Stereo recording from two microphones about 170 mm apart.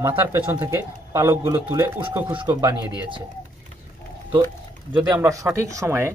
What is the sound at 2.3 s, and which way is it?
Speech, 30° right (ahead or behind).